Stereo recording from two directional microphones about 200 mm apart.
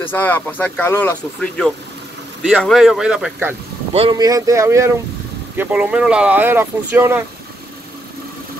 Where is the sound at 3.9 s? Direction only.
25° right (ahead or behind); by 7.2 s 10° right (ahead or behind).